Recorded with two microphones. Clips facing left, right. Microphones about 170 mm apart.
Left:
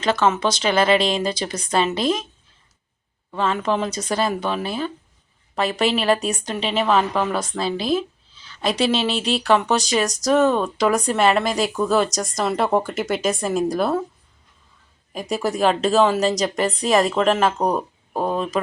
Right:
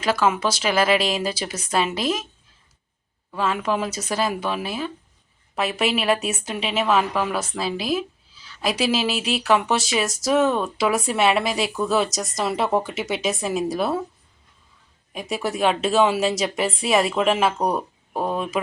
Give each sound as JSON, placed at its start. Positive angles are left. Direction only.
{"t": 0.0, "sound": "speech", "side_deg": -10}
{"t": 3.3, "sound": "a woman's voice", "side_deg": -5}
{"t": 15.1, "sound": "a woman's voice", "side_deg": 0}